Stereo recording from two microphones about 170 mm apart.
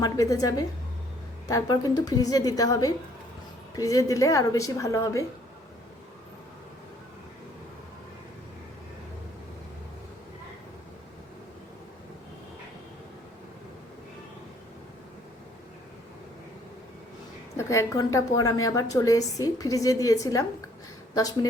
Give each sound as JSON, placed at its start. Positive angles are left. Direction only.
{"t": 0.0, "sound": "a woman's voice", "side_deg": 20}
{"t": 17.6, "sound": "a woman's voice", "side_deg": 15}